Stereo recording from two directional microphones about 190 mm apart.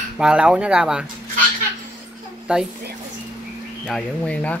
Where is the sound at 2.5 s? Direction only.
5° right (ahead or behind).